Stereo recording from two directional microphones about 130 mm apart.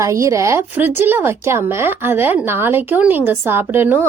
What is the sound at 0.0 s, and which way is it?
Speech, 25° right (ahead or behind).